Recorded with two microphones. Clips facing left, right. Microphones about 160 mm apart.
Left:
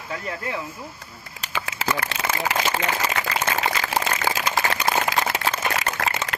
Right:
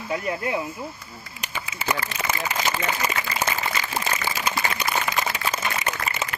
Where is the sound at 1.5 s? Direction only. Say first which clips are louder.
Left 2 dB; 90° left.